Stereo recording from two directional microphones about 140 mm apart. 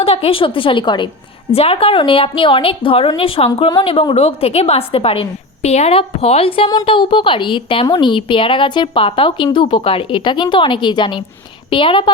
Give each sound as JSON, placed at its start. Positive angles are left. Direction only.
{"t": 0.0, "sound": "a woman's voice", "side_deg": 45}